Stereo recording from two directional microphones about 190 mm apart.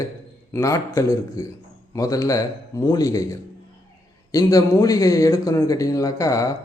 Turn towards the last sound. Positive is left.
turn(degrees=15)  # may be behind; listen again after turning